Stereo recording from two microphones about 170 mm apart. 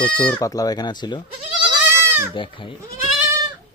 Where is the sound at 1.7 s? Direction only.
15° right (ahead or behind).